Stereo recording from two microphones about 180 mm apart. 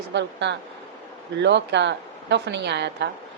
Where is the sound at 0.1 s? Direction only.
80° right.